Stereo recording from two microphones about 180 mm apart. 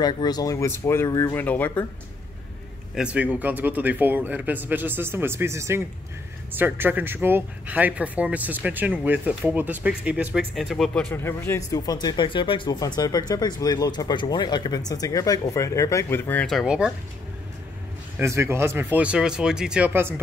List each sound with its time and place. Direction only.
0.0 s speech: 25° left (ahead or behind)
2.9 s speech: 5° right (ahead or behind)
11.2 s speech: 15° left (ahead or behind); by 16.9 s 5° right (ahead or behind)
18.1 s speech: 15° right (ahead or behind)